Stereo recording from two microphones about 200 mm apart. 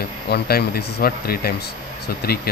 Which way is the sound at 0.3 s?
50° left (ahead or behind).